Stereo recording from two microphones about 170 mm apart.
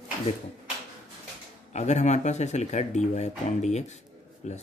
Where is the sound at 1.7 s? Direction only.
40° left (ahead or behind).